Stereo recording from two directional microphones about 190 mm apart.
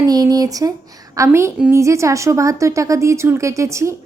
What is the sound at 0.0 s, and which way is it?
A woman's voice, 20° right (ahead or behind).